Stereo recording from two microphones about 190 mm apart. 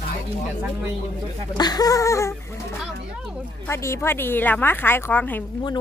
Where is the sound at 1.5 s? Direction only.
20° left (ahead or behind).